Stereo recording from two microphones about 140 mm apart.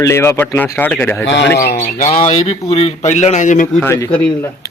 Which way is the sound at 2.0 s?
65° left (ahead or behind).